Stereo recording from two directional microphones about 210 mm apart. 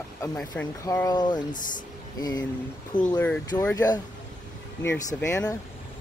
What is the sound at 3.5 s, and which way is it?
Speech, 10° left (ahead or behind).